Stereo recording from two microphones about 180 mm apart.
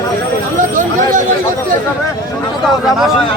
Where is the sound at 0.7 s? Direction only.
45° right (ahead or behind).